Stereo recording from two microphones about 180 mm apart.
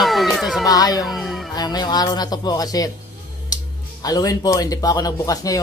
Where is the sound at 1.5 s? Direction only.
20° left (ahead or behind).